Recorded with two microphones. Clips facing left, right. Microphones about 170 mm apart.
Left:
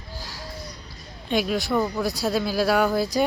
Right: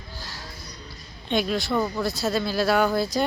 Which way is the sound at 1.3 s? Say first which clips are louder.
Left 1 dB; 10° left (ahead or behind).